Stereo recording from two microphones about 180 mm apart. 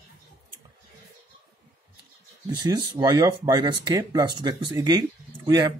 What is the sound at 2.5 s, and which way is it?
Speech, 20° right (ahead or behind).